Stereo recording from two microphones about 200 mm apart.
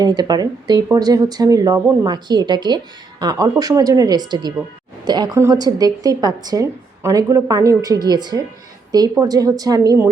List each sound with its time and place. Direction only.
0.0 s speech: 20° right (ahead or behind)